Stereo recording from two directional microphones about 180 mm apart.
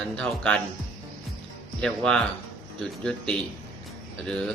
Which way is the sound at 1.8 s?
Centre (ahead or behind).